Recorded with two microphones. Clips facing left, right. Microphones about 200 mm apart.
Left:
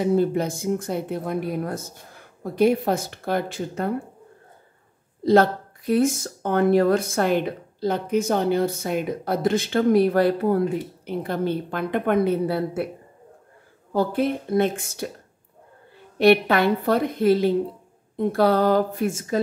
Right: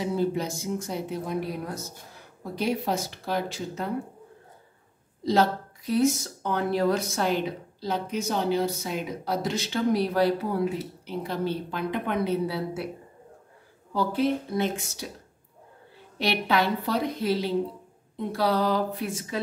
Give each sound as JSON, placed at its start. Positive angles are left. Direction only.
{"t": 0.0, "sound": "speech", "side_deg": 55}
{"t": 5.2, "sound": "speech", "side_deg": 55}
{"t": 13.9, "sound": "speech", "side_deg": 55}
{"t": 16.2, "sound": "speech", "side_deg": 55}